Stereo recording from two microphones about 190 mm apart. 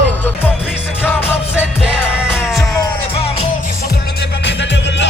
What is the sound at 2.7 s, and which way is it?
Music, 20° left (ahead or behind).